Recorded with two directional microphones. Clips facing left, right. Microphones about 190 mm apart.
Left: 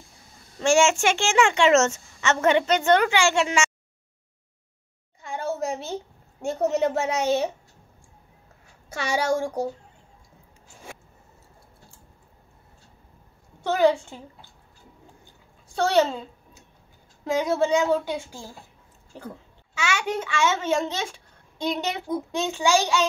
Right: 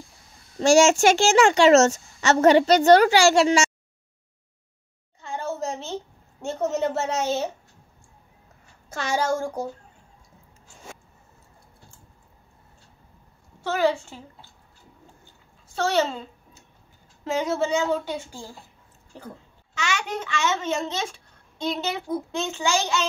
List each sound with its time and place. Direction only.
0.6 s a woman's voice: 40° right (ahead or behind)
5.2 s a sound: 10° left (ahead or behind)
6.4 s a woman's voice: 15° left (ahead or behind)
8.8 s a woman's voice: 10° left (ahead or behind)
13.7 s a woman's voice: 15° left (ahead or behind)
15.8 s a woman's voice: 15° left (ahead or behind)
17.2 s a woman's voice: 10° left (ahead or behind)